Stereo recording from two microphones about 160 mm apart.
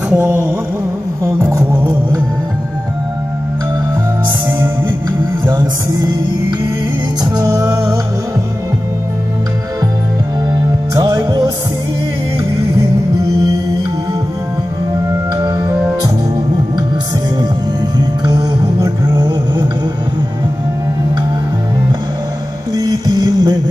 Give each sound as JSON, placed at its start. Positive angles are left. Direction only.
{"t": 0.1, "sound": "a sound", "side_deg": -15}
{"t": 1.6, "sound": "music", "side_deg": -10}
{"t": 1.9, "sound": "music", "side_deg": -25}
{"t": 5.4, "sound": "music", "side_deg": -25}
{"t": 7.3, "sound": "music", "side_deg": -20}
{"t": 11.0, "sound": "music", "side_deg": -25}
{"t": 15.4, "sound": "music", "side_deg": -25}
{"t": 17.9, "sound": "music", "side_deg": -25}
{"t": 22.8, "sound": "music", "side_deg": -25}